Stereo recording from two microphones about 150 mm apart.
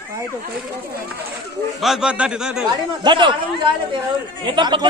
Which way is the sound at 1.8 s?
5° right (ahead or behind).